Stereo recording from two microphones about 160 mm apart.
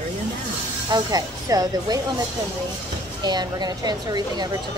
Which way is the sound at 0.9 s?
25° right (ahead or behind).